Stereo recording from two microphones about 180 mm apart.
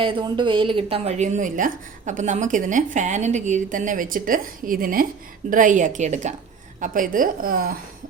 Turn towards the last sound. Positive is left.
turn(degrees=-55)  # may be behind; listen again after turning